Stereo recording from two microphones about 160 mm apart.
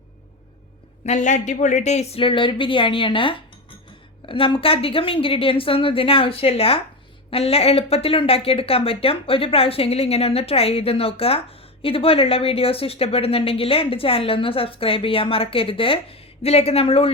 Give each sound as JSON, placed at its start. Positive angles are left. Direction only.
{"t": 1.0, "sound": "speech", "side_deg": 50}